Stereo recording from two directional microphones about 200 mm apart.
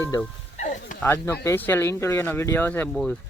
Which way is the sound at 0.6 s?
40° left (ahead or behind).